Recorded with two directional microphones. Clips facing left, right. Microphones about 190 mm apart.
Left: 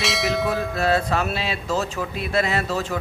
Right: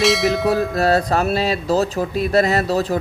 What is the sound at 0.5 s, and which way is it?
Speech, 40° right (ahead or behind).